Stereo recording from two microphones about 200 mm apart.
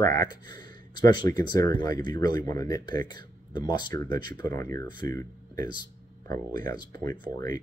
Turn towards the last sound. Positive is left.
turn(degrees=20)  # may be behind; listen again after turning